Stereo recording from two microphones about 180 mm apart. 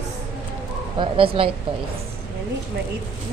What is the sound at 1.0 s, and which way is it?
Speech, 30° right (ahead or behind).